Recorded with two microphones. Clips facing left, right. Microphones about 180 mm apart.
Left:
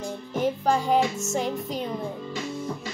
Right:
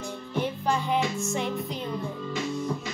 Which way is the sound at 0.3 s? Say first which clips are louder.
Left 4 dB; 45° left (ahead or behind).